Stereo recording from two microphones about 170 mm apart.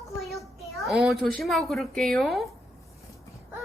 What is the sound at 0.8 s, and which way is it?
Speech, centre (ahead or behind).